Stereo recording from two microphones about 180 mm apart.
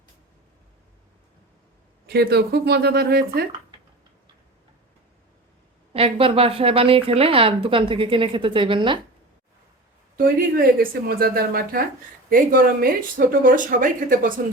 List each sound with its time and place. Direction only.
2.0 s speech: 65° right (ahead or behind)
5.9 s speech: 30° right (ahead or behind)
10.8 s speech: 55° right (ahead or behind)